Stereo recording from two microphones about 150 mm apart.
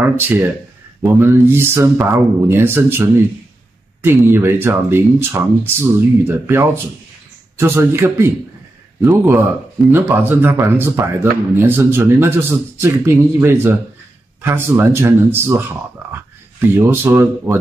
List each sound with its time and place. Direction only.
1.2 s speech: 15° right (ahead or behind)